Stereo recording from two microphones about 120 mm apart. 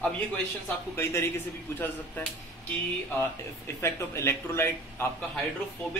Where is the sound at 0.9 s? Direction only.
20° left (ahead or behind).